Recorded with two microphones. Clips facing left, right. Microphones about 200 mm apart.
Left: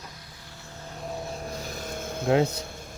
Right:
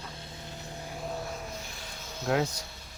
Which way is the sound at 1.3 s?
40° left (ahead or behind).